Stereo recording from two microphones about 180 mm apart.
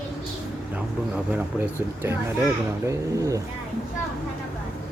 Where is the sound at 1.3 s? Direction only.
10° right (ahead or behind).